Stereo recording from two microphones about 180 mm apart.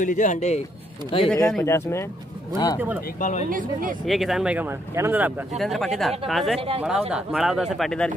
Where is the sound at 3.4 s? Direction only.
50° right (ahead or behind).